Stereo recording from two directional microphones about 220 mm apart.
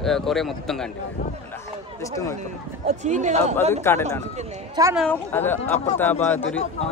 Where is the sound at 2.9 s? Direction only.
30° right (ahead or behind).